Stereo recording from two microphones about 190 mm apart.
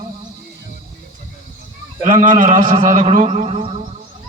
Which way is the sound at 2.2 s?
40° right (ahead or behind).